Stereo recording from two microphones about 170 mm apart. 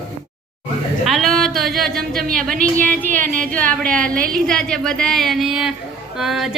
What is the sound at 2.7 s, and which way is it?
Speech, 10° left (ahead or behind).